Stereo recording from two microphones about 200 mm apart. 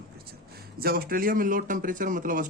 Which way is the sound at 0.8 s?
45° right (ahead or behind).